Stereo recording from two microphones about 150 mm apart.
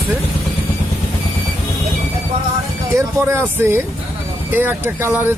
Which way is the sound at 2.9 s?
15° right (ahead or behind).